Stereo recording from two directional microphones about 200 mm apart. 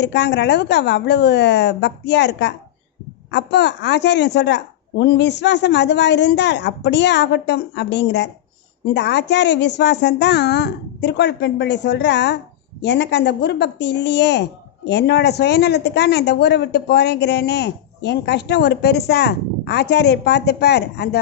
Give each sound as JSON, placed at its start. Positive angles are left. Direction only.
{"t": 0.0, "sound": "speech", "side_deg": 60}